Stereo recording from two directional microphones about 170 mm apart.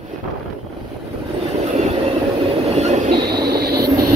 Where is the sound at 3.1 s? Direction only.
70° right (ahead or behind).